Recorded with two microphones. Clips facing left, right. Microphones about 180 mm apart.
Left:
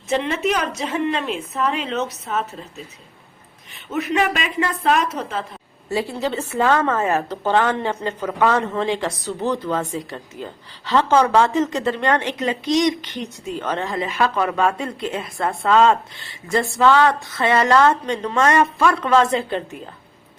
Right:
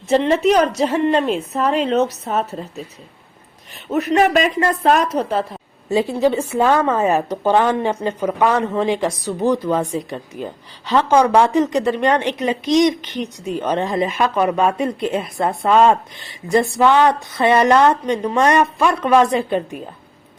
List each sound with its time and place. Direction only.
0.1 s speech: 35° right (ahead or behind)
3.8 s speech: 40° right (ahead or behind)
5.9 s a woman's voice: 20° right (ahead or behind)